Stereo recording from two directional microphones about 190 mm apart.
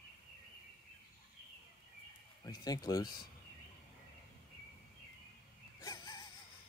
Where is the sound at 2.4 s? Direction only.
20° left (ahead or behind).